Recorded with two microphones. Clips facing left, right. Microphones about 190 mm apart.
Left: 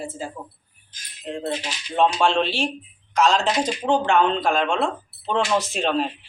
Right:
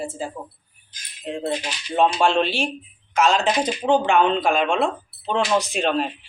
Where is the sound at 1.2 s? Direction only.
10° right (ahead or behind).